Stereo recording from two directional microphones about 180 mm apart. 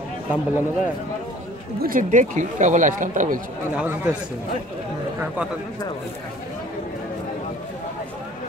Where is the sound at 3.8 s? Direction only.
5° right (ahead or behind).